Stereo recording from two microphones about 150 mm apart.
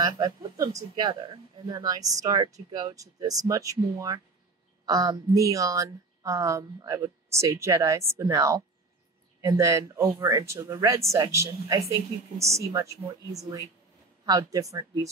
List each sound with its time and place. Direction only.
0.0 s a woman's voice: 25° right (ahead or behind)